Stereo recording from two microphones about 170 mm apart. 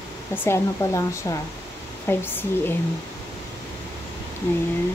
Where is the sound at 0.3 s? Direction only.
15° left (ahead or behind).